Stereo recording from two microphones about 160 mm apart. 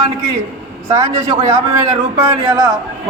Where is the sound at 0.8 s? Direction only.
20° right (ahead or behind).